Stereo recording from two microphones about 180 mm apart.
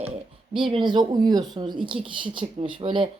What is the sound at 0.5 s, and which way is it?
Speech, 25° right (ahead or behind).